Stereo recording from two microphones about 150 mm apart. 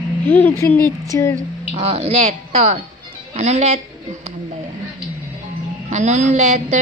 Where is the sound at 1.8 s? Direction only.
40° right (ahead or behind).